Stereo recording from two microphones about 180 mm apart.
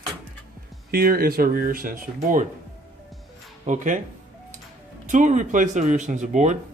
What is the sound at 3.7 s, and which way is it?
Speech, 45° right (ahead or behind).